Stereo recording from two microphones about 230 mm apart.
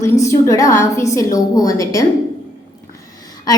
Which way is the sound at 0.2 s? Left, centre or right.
Centre.